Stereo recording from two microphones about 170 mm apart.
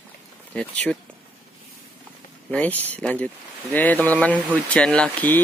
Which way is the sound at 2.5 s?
10° left (ahead or behind).